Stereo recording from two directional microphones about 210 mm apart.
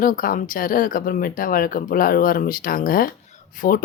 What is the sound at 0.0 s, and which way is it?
Speech, 40° left (ahead or behind).